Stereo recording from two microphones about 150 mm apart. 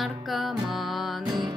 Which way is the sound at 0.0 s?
Centre (ahead or behind).